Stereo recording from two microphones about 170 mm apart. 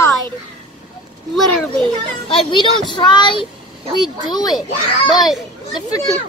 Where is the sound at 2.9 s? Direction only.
25° left (ahead or behind).